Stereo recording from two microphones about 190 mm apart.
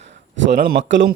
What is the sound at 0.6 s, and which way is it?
Speech, 55° right (ahead or behind).